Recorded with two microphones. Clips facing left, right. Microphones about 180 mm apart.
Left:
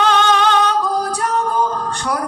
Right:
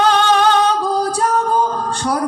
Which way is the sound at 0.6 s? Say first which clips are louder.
Right 1 dB; 30° right (ahead or behind).